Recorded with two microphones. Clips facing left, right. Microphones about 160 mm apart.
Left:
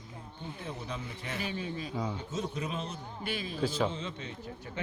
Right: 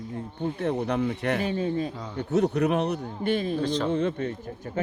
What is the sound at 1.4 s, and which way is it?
Speech, 40° right (ahead or behind).